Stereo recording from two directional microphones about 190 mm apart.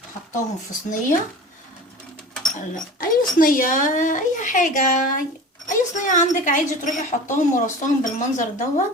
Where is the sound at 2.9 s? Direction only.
45° left (ahead or behind).